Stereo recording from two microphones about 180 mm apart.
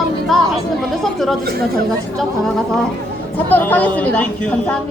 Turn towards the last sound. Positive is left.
turn(degrees=10)  # may be behind; listen again after turning